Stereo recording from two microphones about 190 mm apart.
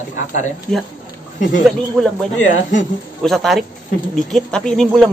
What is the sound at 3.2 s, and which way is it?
Speech, centre (ahead or behind).